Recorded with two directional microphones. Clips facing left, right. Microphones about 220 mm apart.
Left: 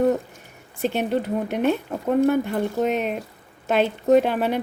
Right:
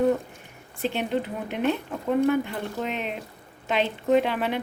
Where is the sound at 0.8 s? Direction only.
45° left (ahead or behind).